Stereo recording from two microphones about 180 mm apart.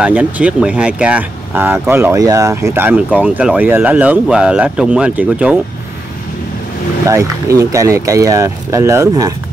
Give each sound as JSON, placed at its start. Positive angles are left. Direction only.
{"t": 0.0, "sound": "speech", "side_deg": -5}
{"t": 7.1, "sound": "speech", "side_deg": -15}